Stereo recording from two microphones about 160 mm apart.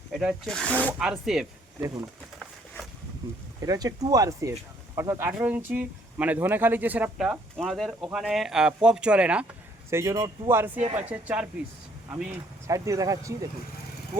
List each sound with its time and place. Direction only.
0.1 s speech: 5° right (ahead or behind)
3.7 s speech: 25° right (ahead or behind); by 9.5 s 5° right (ahead or behind)
9.9 s speech: 20° right (ahead or behind)
12.6 s speech: 20° right (ahead or behind)